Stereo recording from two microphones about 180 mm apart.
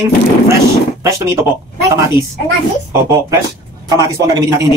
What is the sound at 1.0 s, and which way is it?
Speech, 15° right (ahead or behind).